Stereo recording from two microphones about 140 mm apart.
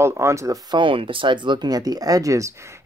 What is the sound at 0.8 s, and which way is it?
Speech, 40° right (ahead or behind).